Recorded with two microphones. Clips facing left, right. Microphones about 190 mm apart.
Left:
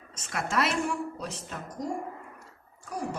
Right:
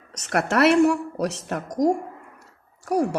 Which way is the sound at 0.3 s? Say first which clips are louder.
Right 10 dB; 70° right (ahead or behind).